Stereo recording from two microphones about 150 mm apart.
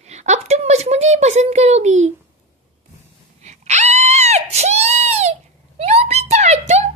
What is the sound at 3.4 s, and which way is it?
Screaming, 50° right (ahead or behind).